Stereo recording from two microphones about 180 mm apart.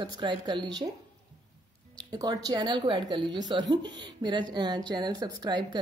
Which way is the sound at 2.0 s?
20° right (ahead or behind).